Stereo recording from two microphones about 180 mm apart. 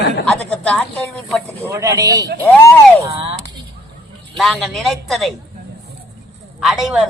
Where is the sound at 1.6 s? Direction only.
15° right (ahead or behind).